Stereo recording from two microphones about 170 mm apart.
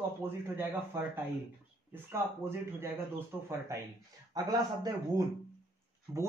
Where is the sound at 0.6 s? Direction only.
15° right (ahead or behind).